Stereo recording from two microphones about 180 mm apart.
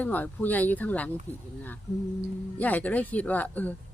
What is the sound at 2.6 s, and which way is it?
Speech, 10° left (ahead or behind).